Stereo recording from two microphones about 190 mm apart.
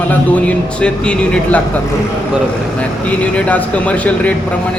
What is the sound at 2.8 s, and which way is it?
Speech, 5° left (ahead or behind).